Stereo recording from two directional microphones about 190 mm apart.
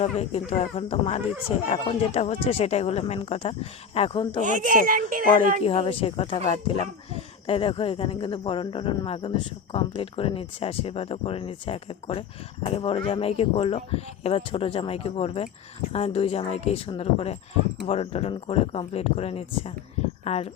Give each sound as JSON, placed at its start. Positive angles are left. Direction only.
{"t": 0.0, "sound": "speech", "side_deg": 35}
{"t": 4.4, "sound": "a child's voice", "side_deg": -40}
{"t": 5.6, "sound": "speech", "side_deg": 25}